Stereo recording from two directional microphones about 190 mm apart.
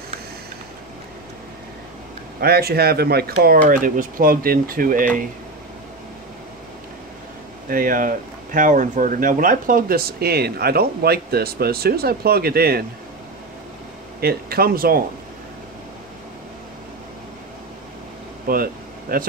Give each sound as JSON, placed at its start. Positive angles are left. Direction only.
{"t": 2.4, "sound": "speech", "side_deg": -55}
{"t": 7.7, "sound": "speech", "side_deg": -45}
{"t": 14.2, "sound": "speech", "side_deg": -55}
{"t": 18.5, "sound": "a sound", "side_deg": -50}